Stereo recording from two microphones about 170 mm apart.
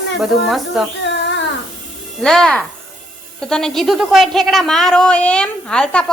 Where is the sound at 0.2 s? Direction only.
Centre (ahead or behind).